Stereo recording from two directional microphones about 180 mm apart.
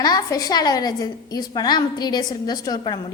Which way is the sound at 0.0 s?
20° left (ahead or behind).